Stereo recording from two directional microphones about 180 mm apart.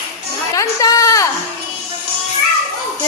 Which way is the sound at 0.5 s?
20° left (ahead or behind).